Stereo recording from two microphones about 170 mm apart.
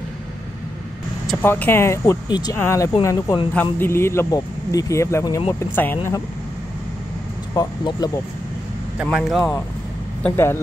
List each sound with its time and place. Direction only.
1.4 s speech: 10° left (ahead or behind)
7.5 s speech: 25° left (ahead or behind)
8.9 s speech: 5° right (ahead or behind)
10.2 s speech: 15° left (ahead or behind)